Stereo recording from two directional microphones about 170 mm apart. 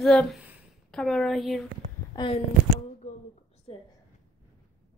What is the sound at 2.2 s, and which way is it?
Speech, 20° left (ahead or behind).